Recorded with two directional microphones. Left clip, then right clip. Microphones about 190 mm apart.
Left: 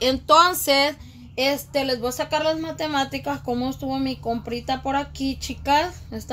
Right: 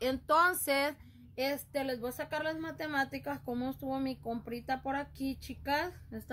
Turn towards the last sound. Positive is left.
turn(degrees=-15)  # may be behind; listen again after turning